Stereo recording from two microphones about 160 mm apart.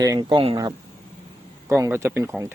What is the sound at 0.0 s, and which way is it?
Speech, 25° right (ahead or behind).